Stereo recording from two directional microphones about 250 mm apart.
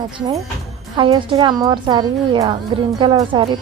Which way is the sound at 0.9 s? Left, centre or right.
Centre.